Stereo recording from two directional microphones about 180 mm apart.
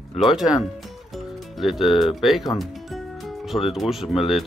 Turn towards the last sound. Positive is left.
turn(degrees=0)  # may be behind; listen again after turning